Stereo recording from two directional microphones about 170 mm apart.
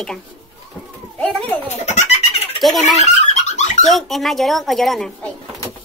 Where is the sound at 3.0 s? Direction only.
45° left (ahead or behind).